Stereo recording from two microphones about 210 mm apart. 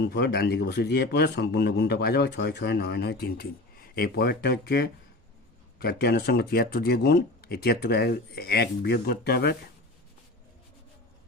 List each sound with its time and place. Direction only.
0.0 s a man's voice: 50° left (ahead or behind)